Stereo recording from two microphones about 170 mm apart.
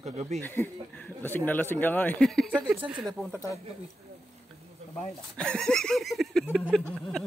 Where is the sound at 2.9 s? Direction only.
Centre (ahead or behind).